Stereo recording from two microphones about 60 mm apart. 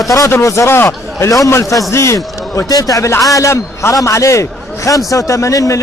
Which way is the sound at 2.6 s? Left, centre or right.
Left.